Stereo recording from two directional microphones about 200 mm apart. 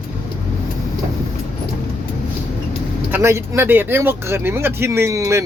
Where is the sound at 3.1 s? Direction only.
15° right (ahead or behind).